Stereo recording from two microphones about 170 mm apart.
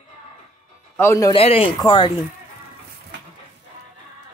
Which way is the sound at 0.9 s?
15° left (ahead or behind).